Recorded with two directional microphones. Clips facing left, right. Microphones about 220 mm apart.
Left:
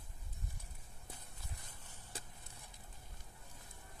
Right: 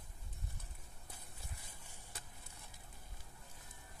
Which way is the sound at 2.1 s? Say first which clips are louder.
Left 5 dB; 30° left (ahead or behind).